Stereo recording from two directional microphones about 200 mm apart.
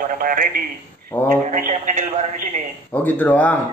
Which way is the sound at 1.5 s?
40° right (ahead or behind).